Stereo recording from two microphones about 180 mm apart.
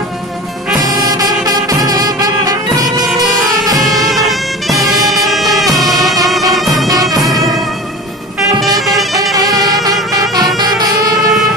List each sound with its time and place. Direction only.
1.0 s music: 20° right (ahead or behind)
3.1 s music: centre (ahead or behind)
8.7 s music: centre (ahead or behind)
11.1 s vehicle: centre (ahead or behind)